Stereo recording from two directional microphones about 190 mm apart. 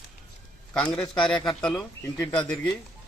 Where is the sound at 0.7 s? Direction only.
5° left (ahead or behind).